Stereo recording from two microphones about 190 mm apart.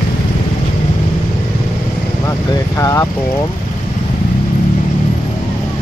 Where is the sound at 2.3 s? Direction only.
15° left (ahead or behind).